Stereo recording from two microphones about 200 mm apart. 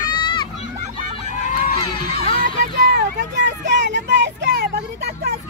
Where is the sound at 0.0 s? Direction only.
25° left (ahead or behind).